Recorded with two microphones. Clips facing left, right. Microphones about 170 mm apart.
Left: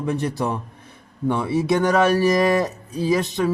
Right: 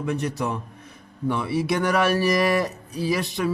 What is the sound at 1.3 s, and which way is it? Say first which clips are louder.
Speech: left 4 dB; 20° left (ahead or behind).